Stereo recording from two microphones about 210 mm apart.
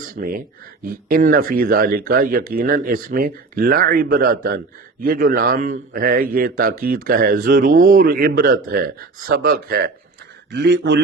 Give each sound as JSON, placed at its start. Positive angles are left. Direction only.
{"t": 0.2, "sound": "a man's voice", "side_deg": -40}
{"t": 10.5, "sound": "a man's voice", "side_deg": -55}